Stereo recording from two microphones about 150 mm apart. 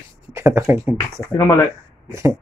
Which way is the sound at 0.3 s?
20° right (ahead or behind).